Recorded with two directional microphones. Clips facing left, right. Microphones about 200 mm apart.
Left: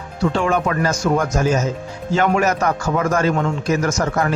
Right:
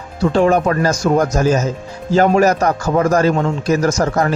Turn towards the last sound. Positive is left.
turn(degrees=-35)  # may be behind; listen again after turning